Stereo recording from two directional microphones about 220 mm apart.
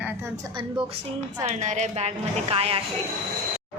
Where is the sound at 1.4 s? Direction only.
35° right (ahead or behind).